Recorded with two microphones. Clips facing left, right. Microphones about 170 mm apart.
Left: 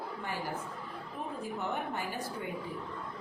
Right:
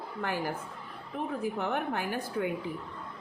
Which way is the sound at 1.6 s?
75° right (ahead or behind).